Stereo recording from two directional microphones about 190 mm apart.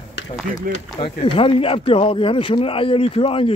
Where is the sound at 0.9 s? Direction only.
25° left (ahead or behind).